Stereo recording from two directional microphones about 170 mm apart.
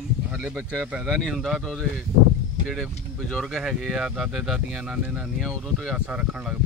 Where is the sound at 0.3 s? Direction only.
5° right (ahead or behind).